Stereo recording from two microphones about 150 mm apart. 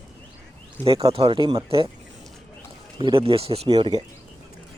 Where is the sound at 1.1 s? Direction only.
35° right (ahead or behind).